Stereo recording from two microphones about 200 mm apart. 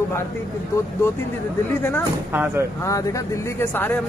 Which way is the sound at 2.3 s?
10° right (ahead or behind).